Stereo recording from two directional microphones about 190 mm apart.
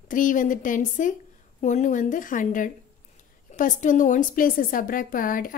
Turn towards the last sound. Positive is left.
turn(degrees=45)  # may be behind; listen again after turning